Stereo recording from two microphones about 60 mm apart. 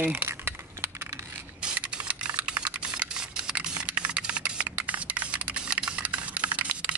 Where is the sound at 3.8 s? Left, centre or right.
Centre.